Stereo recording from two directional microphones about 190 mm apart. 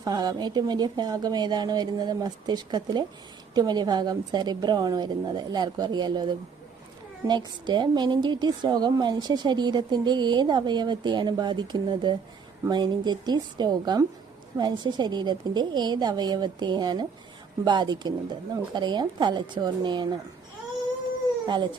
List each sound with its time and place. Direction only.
0.0 s a woman's voice: 20° right (ahead or behind)
21.4 s speech: 25° right (ahead or behind)